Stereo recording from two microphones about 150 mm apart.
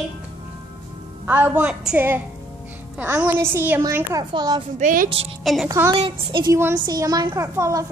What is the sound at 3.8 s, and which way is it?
Speech, 25° right (ahead or behind).